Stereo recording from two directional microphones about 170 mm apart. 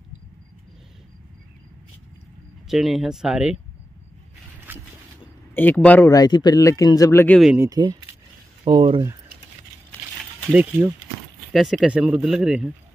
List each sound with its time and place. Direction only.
2.7 s speech: centre (ahead or behind)
4.6 s a sound: 15° right (ahead or behind)
5.5 s speech: 10° left (ahead or behind)
6.1 s speech: 25° left (ahead or behind)
7.5 s speech: 15° right (ahead or behind)
10.5 s speech: 10° right (ahead or behind)